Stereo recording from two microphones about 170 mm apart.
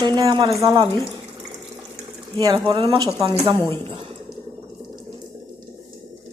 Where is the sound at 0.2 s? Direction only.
30° right (ahead or behind).